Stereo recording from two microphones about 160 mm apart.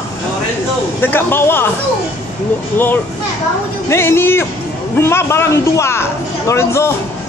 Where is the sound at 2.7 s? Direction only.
10° left (ahead or behind).